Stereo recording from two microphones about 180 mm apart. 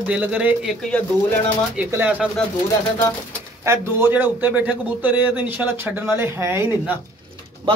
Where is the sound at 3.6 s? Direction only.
15° right (ahead or behind).